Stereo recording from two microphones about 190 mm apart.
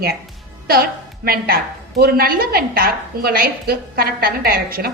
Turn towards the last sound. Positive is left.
turn(degrees=-50)  # may be behind; listen again after turning